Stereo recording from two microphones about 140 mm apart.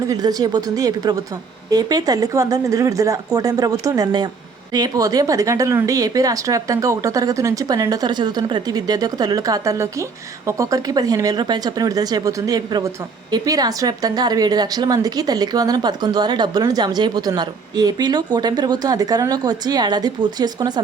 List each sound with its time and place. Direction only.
0.1 s a woman's voice: 25° right (ahead or behind)